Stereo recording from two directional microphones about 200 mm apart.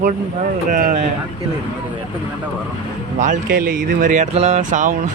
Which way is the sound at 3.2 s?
40° right (ahead or behind).